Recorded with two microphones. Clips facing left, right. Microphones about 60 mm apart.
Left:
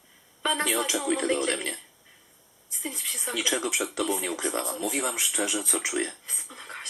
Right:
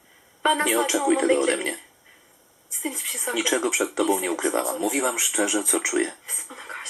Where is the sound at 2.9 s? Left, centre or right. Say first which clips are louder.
Right 4 dB; centre.